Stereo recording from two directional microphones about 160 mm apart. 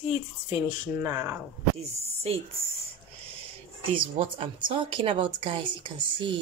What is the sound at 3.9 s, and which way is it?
Speech, 35° right (ahead or behind).